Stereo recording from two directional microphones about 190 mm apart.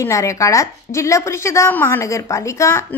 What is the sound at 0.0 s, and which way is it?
A woman's voice, 15° left (ahead or behind).